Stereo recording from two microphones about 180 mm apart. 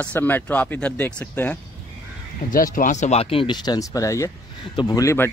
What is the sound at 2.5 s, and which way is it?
Speech, 50° left (ahead or behind).